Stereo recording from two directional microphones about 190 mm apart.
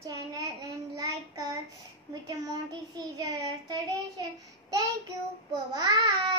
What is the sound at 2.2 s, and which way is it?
Child singing, 20° right (ahead or behind).